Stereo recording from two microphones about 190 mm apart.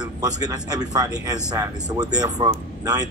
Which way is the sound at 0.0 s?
20° right (ahead or behind).